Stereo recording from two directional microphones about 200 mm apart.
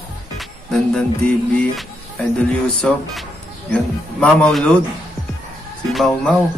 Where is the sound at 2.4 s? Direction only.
5° left (ahead or behind).